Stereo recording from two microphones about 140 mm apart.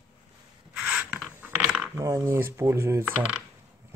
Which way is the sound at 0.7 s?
10° right (ahead or behind).